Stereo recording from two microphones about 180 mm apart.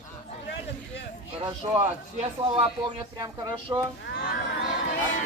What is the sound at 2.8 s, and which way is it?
Speech, 20° right (ahead or behind).